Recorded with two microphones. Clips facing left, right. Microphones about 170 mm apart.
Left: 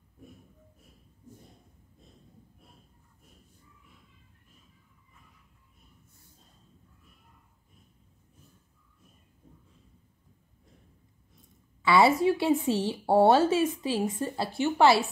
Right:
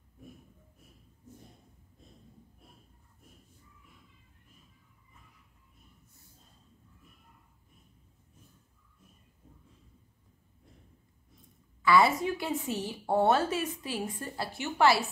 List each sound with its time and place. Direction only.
11.8 s a woman's voice: 30° left (ahead or behind)